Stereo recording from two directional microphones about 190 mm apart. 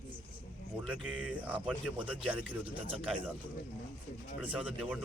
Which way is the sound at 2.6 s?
30° right (ahead or behind).